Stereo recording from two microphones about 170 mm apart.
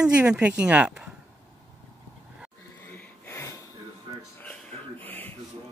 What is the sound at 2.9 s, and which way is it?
Wheeze, 10° left (ahead or behind).